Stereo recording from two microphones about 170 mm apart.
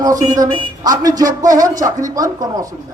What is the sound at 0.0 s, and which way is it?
A man's voice, 20° right (ahead or behind).